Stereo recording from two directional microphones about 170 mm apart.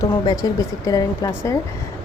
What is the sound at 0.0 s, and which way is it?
Speech, 25° left (ahead or behind).